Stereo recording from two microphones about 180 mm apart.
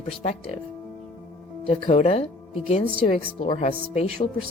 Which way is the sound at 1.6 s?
35° left (ahead or behind).